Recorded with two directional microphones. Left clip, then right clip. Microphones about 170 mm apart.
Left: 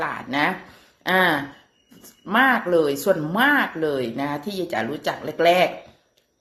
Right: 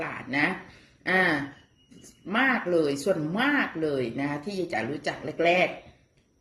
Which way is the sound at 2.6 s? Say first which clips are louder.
Left 5 dB; 10° right (ahead or behind).